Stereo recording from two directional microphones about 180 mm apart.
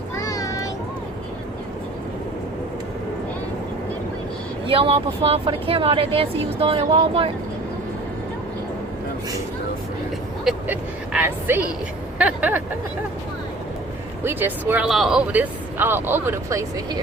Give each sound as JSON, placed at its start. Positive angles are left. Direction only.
{"t": 0.2, "sound": "a sound", "side_deg": 20}
{"t": 4.6, "sound": "speech", "side_deg": -30}
{"t": 10.4, "sound": "speech", "side_deg": -5}
{"t": 14.3, "sound": "speech", "side_deg": -10}